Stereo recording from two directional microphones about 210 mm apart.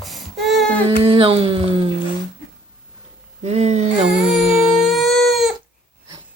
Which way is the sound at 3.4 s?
30° right (ahead or behind).